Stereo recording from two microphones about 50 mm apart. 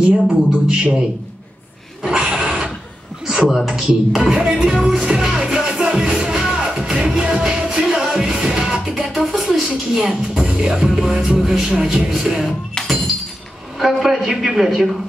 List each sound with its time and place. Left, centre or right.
0.7 s speech: centre
2.0 s a sound: centre
3.3 s music: centre
9.1 s speech: centre
12.8 s glass: centre
13.7 s a woman's voice: centre